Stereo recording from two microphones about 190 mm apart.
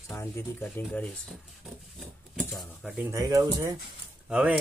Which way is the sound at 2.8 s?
5° right (ahead or behind).